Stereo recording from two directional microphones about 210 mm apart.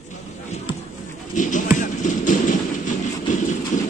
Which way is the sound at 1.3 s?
35° left (ahead or behind).